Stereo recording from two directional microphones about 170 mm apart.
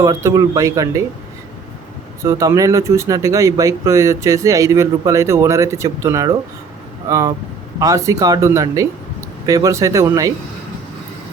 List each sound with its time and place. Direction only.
0.0 s speech: 15° right (ahead or behind)
2.2 s speech: 20° right (ahead or behind)